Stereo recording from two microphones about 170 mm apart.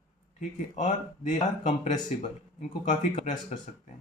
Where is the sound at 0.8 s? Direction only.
45° left (ahead or behind).